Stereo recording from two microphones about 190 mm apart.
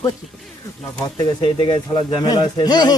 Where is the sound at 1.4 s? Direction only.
25° left (ahead or behind).